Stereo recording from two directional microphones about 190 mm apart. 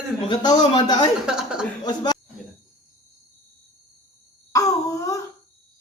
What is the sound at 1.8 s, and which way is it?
Speech, 20° left (ahead or behind).